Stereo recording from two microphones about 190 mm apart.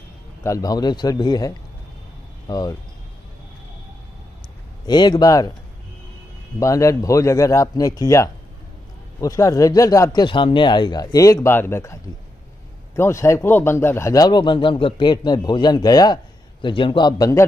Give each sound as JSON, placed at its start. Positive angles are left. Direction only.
{"t": 0.4, "sound": "speech", "side_deg": 20}
{"t": 4.8, "sound": "speech", "side_deg": 20}
{"t": 6.6, "sound": "speech", "side_deg": 15}